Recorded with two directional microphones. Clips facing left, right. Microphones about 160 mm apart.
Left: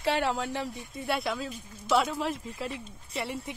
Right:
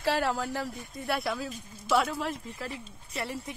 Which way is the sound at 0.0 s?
Centre (ahead or behind).